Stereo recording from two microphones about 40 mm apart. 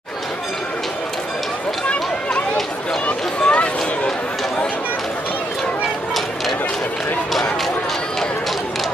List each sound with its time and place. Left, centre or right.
3.1 s run: left